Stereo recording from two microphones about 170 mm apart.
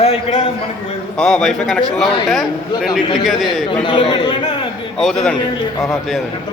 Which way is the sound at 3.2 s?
Centre (ahead or behind).